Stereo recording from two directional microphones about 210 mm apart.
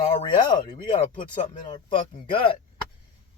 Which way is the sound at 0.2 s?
20° left (ahead or behind).